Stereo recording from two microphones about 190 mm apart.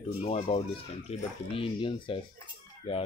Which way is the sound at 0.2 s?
30° left (ahead or behind).